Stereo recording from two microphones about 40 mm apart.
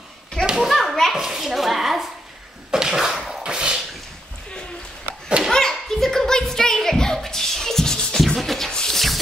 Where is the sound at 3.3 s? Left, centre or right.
Right.